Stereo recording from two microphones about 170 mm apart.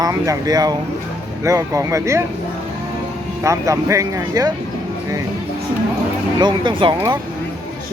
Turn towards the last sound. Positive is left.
turn(degrees=-30)  # may be behind; listen again after turning